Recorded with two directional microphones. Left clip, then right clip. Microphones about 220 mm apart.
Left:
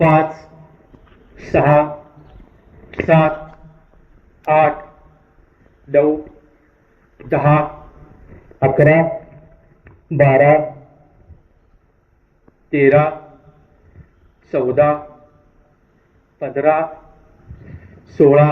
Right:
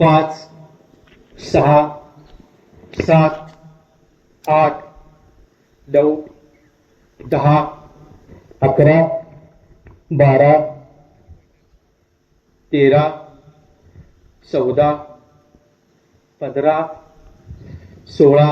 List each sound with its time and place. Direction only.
0.0 s speech: 55° right (ahead or behind)
1.5 s speech: 55° right (ahead or behind)
3.0 s speech: 50° right (ahead or behind)
4.4 s speech: 50° right (ahead or behind)
5.9 s speech: 55° right (ahead or behind)
7.2 s speech: 50° right (ahead or behind)
8.3 s a sound: 55° right (ahead or behind)
12.7 s speech: 55° right (ahead or behind)
14.5 s speech: 50° right (ahead or behind)
16.4 s speech: 55° right (ahead or behind)
17.6 s a sound: 55° right (ahead or behind)
18.2 s speech: 55° right (ahead or behind)